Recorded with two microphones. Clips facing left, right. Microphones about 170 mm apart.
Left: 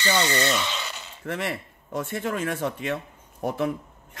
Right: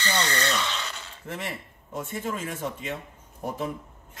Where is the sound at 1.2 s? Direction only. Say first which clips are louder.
Left 6 dB; 70° left (ahead or behind).